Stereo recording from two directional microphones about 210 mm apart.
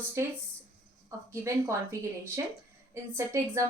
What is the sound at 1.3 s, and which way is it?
Speech, 15° right (ahead or behind).